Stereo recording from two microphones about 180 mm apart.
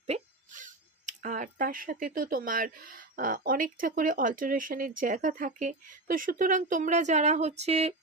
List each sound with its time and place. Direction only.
0.1 s speech: 45° right (ahead or behind)